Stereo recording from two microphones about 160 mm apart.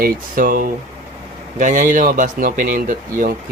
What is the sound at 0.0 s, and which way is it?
Speech, 60° right (ahead or behind).